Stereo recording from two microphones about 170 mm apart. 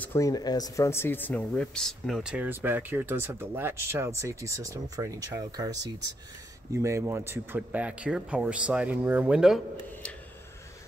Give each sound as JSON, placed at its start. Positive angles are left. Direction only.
{"t": 0.0, "sound": "speech", "side_deg": 15}